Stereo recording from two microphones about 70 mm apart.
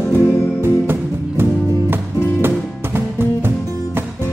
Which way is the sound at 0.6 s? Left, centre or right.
Right.